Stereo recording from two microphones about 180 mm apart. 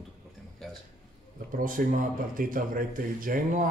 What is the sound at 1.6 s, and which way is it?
A man's voice, 50° right (ahead or behind).